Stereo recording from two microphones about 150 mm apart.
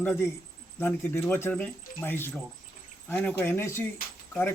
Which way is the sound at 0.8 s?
15° left (ahead or behind).